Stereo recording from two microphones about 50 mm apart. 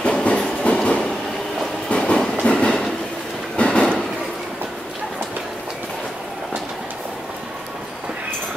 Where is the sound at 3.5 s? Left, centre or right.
Left.